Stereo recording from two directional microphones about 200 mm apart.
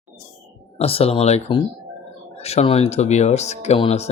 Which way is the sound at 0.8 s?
30° left (ahead or behind).